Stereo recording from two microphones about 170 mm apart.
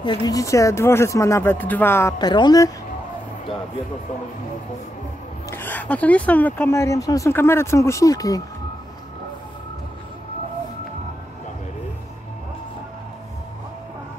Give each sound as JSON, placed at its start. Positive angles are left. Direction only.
{"t": 0.0, "sound": "speech", "side_deg": 25}
{"t": 2.1, "sound": "speech", "side_deg": 25}
{"t": 5.5, "sound": "speech", "side_deg": 10}